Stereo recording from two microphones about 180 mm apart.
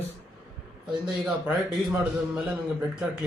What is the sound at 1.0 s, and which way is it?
Speech, 5° right (ahead or behind).